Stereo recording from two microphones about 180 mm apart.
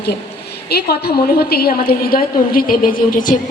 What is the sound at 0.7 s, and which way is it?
A woman's voice, 60° left (ahead or behind).